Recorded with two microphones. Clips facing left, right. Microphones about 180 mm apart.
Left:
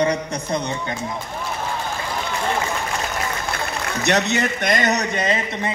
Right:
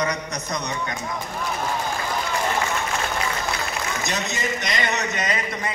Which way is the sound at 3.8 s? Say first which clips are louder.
Left 11 dB; 65° left (ahead or behind).